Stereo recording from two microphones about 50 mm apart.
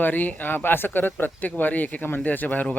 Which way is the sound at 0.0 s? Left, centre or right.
Left.